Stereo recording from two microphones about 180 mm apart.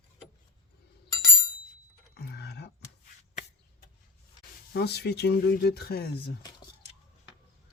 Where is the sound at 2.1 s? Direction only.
65° left (ahead or behind).